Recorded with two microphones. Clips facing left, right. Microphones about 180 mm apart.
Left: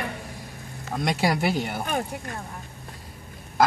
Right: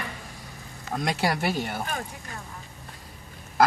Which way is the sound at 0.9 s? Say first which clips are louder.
Left 2 dB; 5° left (ahead or behind).